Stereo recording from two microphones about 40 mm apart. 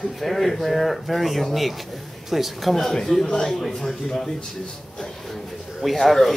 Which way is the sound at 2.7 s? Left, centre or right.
Centre.